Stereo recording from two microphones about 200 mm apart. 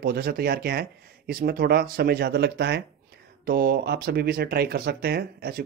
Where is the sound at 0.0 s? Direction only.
50° right (ahead or behind).